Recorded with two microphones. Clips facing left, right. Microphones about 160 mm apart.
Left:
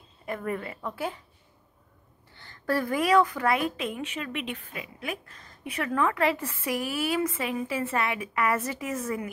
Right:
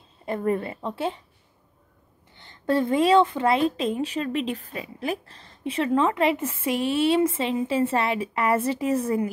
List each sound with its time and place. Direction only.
0.2 s a woman's voice: 30° right (ahead or behind)
2.3 s a woman's voice: 20° right (ahead or behind)